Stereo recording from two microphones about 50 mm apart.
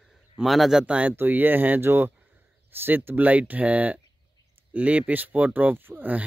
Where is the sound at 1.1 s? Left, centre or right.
Right.